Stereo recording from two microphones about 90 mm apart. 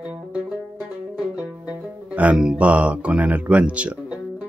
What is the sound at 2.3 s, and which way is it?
Speech, 5° right (ahead or behind).